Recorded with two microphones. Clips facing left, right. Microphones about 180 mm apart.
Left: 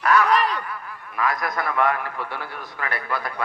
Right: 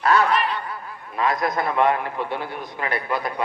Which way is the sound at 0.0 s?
30° right (ahead or behind).